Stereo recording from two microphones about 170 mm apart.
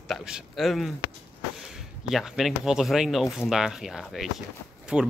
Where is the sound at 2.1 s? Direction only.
Centre (ahead or behind).